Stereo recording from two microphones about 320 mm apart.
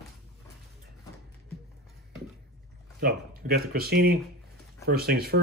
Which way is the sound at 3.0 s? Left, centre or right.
Right.